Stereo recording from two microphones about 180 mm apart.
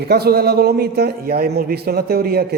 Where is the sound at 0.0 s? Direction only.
60° right (ahead or behind).